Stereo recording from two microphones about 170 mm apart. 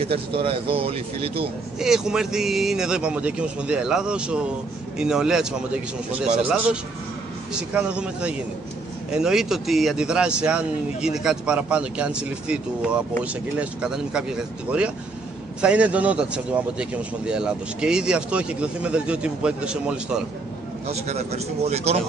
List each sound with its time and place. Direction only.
0.0 s speech: 35° right (ahead or behind)
1.8 s a man's voice: 5° right (ahead or behind)
20.8 s speech: 40° right (ahead or behind)